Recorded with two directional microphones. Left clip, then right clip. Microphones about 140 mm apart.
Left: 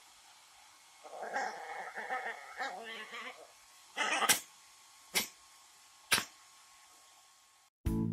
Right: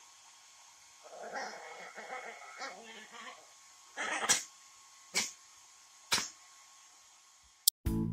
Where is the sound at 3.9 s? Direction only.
45° left (ahead or behind).